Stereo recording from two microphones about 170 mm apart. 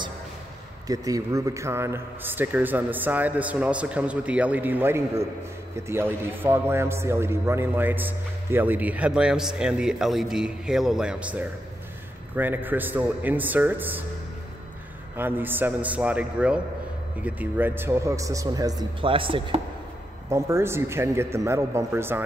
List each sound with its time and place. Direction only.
0.8 s speech: 20° right (ahead or behind)
15.1 s speech: 10° right (ahead or behind); by 19.6 s 30° right (ahead or behind)
20.2 s speech: 15° right (ahead or behind)